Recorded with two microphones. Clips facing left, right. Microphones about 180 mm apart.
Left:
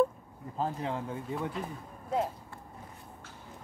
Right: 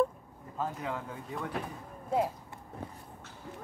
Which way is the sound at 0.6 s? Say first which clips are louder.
Left 2 dB; 30° left (ahead or behind).